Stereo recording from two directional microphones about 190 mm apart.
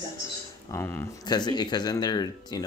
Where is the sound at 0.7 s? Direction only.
15° left (ahead or behind).